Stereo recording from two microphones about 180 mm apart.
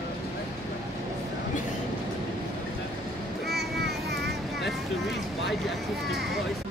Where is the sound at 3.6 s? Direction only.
65° right (ahead or behind).